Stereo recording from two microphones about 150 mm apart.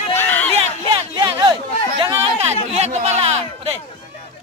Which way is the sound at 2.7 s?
45° right (ahead or behind).